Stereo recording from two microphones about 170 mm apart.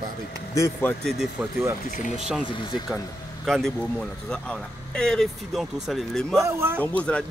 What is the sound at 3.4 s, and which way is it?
Speech, centre (ahead or behind).